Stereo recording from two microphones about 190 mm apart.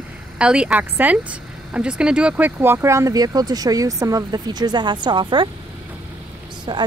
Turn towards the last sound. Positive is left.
turn(degrees=-25)  # may be behind; listen again after turning